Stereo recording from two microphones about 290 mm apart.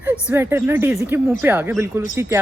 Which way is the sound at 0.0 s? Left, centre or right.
Centre.